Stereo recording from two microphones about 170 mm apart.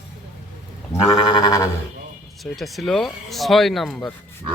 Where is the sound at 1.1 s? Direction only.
30° left (ahead or behind).